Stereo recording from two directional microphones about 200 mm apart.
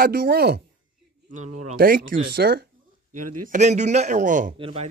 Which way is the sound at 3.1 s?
40° right (ahead or behind).